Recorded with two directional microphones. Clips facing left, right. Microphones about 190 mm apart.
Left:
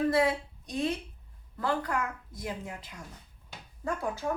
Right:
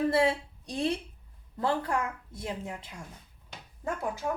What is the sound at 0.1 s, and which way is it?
A woman's voice, 30° right (ahead or behind).